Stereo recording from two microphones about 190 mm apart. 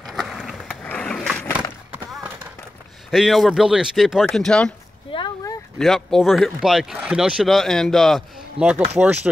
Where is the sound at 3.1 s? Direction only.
Centre (ahead or behind).